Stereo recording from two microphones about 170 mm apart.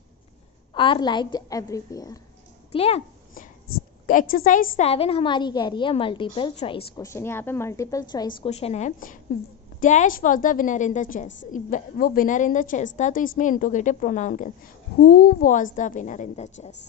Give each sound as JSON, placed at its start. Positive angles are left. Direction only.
{"t": 0.7, "sound": "a woman's voice", "side_deg": 30}
{"t": 2.7, "sound": "a woman's voice", "side_deg": 35}
{"t": 4.1, "sound": "a woman's voice", "side_deg": 55}
{"t": 4.8, "sound": "a woman's voice", "side_deg": 35}
{"t": 7.0, "sound": "a woman's voice", "side_deg": 15}
{"t": 8.5, "sound": "a woman's voice", "side_deg": 40}
{"t": 15.0, "sound": "a woman's voice", "side_deg": 65}